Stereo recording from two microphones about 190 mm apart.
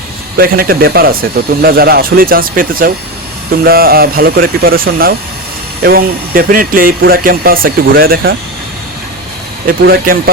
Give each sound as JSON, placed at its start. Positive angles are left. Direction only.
{"t": 0.3, "sound": "speech", "side_deg": -50}
{"t": 9.8, "sound": "speech", "side_deg": -55}